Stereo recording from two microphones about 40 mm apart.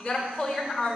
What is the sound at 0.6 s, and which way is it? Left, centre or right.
Speech, centre.